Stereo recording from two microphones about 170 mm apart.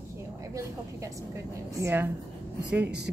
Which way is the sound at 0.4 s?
15° right (ahead or behind).